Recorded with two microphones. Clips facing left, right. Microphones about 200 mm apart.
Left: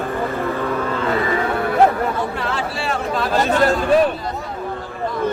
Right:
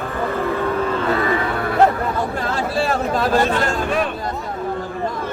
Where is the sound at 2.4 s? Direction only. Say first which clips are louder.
Right 3 dB; 45° right (ahead or behind).